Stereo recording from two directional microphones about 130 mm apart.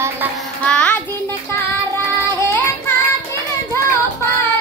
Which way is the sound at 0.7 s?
10° left (ahead or behind).